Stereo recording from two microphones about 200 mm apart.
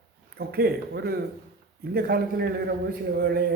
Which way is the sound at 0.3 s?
55° right (ahead or behind).